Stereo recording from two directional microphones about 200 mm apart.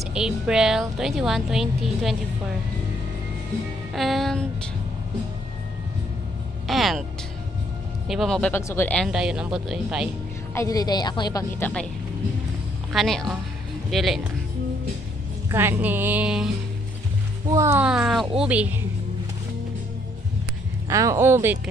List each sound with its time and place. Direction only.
0.0 s a woman's voice: 5° right (ahead or behind)
3.9 s a woman's voice: centre (ahead or behind)
6.7 s speech: centre (ahead or behind)
8.1 s a woman's voice: centre (ahead or behind)
10.5 s a woman's voice: 15° left (ahead or behind)
11.6 s a woman's voice: 5° left (ahead or behind)
12.9 s a woman's voice: centre (ahead or behind)
15.5 s a woman's voice: 10° right (ahead or behind)
17.5 s a woman's voice: 15° right (ahead or behind)
20.9 s a woman's voice: 15° right (ahead or behind)